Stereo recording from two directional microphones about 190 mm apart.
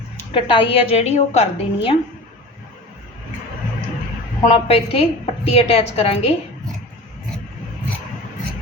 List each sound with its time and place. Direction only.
0.3 s a woman's voice: 25° left (ahead or behind)
4.4 s a woman's voice: 30° left (ahead or behind)